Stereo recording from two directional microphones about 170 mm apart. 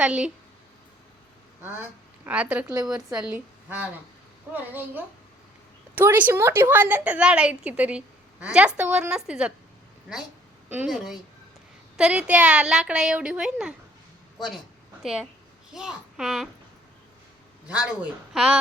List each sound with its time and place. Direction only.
0.0 s a woman's voice: 5° right (ahead or behind)
1.6 s a woman's voice: 10° right (ahead or behind)
2.9 s speech: 20° right (ahead or behind)
3.2 s a woman's voice: 10° right (ahead or behind)
10.7 s a woman's voice: 5° right (ahead or behind)
15.0 s a woman's voice: centre (ahead or behind)
17.7 s a woman's voice: 5° right (ahead or behind)